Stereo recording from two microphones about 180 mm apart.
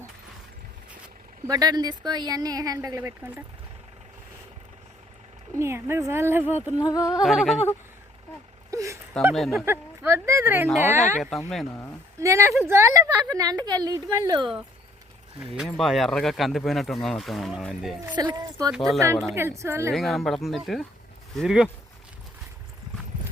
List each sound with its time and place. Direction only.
1.5 s a woman's voice: 20° right (ahead or behind)
5.5 s speech: 15° right (ahead or behind)
6.7 s a sound: 20° left (ahead or behind)
7.2 s speech: centre (ahead or behind)
8.7 s a sound: 15° right (ahead or behind)
9.3 s speech: centre (ahead or behind)
9.6 s speech: 15° right (ahead or behind)
11.4 s speech: centre (ahead or behind)
12.2 s a woman's voice: 15° right (ahead or behind)
15.5 s speech: centre (ahead or behind)
18.2 s a woman's voice: 20° right (ahead or behind)
18.7 s speech: centre (ahead or behind)
18.9 s speech: 15° right (ahead or behind)
19.9 s speech: centre (ahead or behind)